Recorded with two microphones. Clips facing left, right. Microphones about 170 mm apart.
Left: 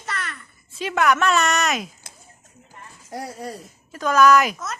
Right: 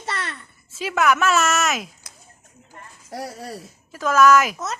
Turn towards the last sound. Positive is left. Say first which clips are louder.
# even
turn(degrees=0)  # may be behind; listen again after turning